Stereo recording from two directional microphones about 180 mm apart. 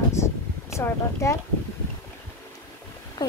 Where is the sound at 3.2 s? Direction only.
20° left (ahead or behind).